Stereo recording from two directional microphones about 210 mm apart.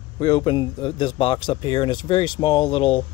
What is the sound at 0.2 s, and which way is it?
Speech, 25° left (ahead or behind).